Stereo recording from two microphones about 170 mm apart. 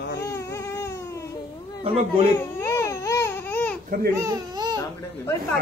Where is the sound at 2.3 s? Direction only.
15° left (ahead or behind).